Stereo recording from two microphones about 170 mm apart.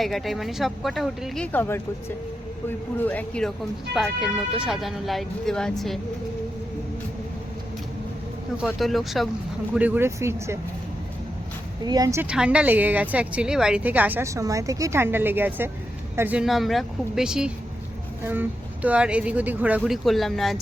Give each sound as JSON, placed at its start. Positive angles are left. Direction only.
{"t": 0.0, "sound": "speech", "side_deg": 0}
{"t": 1.5, "sound": "speech", "side_deg": 15}
{"t": 8.5, "sound": "speech", "side_deg": 0}
{"t": 11.9, "sound": "speech", "side_deg": -20}
{"t": 12.2, "sound": "speech", "side_deg": -5}